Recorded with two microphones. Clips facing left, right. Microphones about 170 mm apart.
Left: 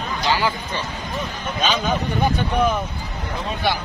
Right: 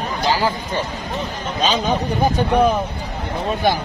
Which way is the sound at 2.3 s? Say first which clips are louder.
Right 4 dB; 40° right (ahead or behind).